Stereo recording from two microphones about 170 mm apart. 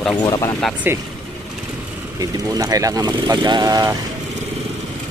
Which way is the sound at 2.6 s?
20° right (ahead or behind).